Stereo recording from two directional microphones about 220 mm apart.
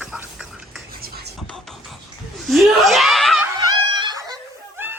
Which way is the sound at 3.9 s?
20° right (ahead or behind).